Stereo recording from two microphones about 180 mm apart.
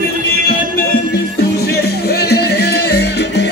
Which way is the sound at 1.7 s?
60° left (ahead or behind).